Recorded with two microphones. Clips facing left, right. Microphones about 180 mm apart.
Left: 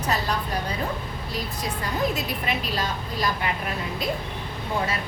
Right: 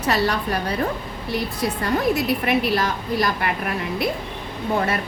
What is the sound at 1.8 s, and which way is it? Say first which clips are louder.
A woman's voice: right 5 dB; 65° right (ahead or behind).